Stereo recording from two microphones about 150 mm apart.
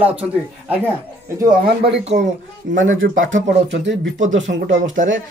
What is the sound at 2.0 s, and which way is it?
A child's voice, 50° right (ahead or behind).